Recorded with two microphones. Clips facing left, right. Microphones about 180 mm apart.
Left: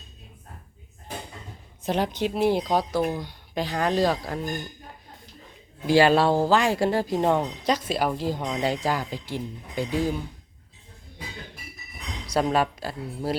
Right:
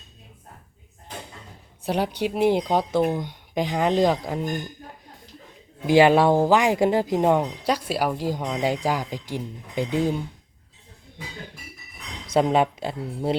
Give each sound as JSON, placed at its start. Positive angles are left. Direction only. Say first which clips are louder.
{"t": 1.8, "sound": "speech", "louder": "right 1 dB", "side_deg": -10}
{"t": 5.8, "sound": "speech", "louder": "right 3 dB", "side_deg": -20}
{"t": 12.3, "sound": "speech", "louder": "right 3 dB", "side_deg": -20}